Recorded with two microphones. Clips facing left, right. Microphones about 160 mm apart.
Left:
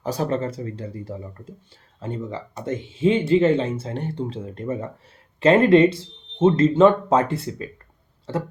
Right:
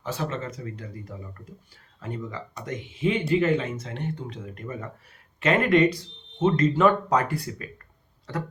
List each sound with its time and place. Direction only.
0.0 s speech: 40° left (ahead or behind)